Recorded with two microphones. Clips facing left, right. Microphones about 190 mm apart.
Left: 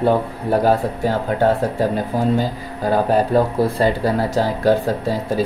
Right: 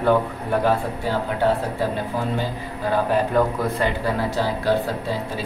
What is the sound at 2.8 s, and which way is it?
Speech, 35° left (ahead or behind).